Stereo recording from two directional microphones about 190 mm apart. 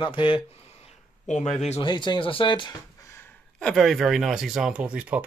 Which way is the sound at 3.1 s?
10° left (ahead or behind).